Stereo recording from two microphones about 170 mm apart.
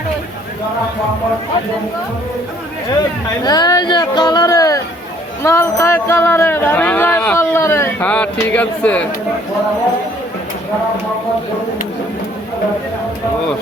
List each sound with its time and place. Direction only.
3.4 s speech: 25° left (ahead or behind); by 9.0 s 10° left (ahead or behind)